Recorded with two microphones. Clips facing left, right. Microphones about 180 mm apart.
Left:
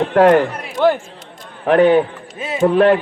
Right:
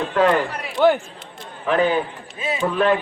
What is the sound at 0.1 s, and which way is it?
Speech, 65° left (ahead or behind).